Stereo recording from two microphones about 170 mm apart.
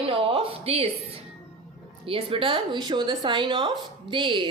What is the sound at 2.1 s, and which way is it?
A woman's voice, 30° right (ahead or behind).